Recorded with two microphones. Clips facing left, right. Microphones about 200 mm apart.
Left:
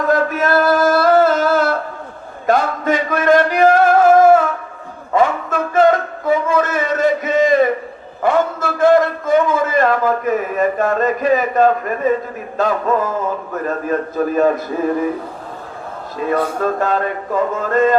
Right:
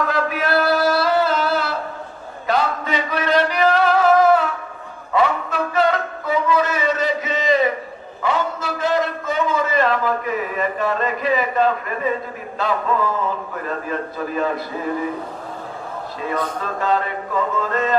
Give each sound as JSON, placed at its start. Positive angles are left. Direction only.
{"t": 0.1, "sound": "music", "side_deg": 45}
{"t": 5.1, "sound": "a sound", "side_deg": 45}
{"t": 12.5, "sound": "music", "side_deg": 45}
{"t": 16.2, "sound": "music", "side_deg": 50}